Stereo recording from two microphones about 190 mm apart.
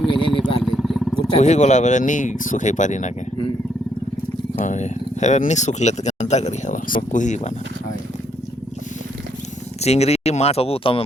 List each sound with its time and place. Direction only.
0.1 s vehicle: 25° left (ahead or behind)
0.6 s vehicle: centre (ahead or behind)
1.4 s speech: 35° left (ahead or behind)
4.6 s speech: 40° left (ahead or behind)
9.8 s speech: 35° left (ahead or behind)